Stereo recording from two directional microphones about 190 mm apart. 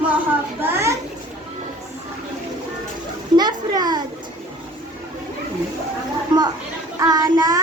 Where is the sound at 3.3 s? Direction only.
20° right (ahead or behind).